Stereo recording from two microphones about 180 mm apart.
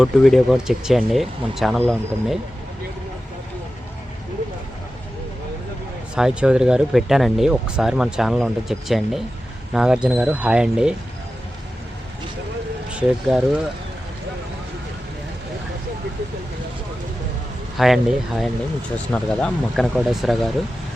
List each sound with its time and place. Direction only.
0.0 s speech: centre (ahead or behind)
6.1 s speech: 5° right (ahead or behind)
13.0 s speech: 5° right (ahead or behind)
17.7 s speech: centre (ahead or behind)